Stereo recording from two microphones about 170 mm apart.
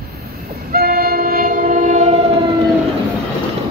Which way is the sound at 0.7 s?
60° right (ahead or behind).